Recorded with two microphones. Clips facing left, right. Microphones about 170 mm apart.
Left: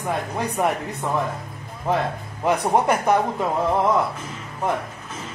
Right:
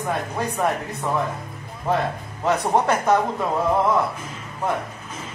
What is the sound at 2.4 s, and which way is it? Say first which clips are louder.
Speech: left 1 dB; 15° left (ahead or behind).